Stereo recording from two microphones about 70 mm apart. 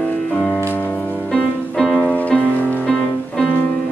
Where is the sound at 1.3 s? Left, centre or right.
Centre.